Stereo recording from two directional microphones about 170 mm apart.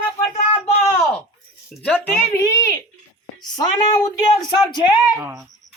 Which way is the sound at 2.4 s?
20° left (ahead or behind).